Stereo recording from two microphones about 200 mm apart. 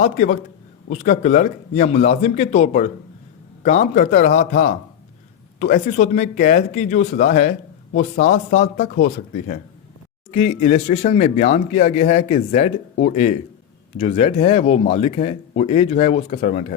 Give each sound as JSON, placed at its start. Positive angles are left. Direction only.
{"t": 0.0, "sound": "speech", "side_deg": 40}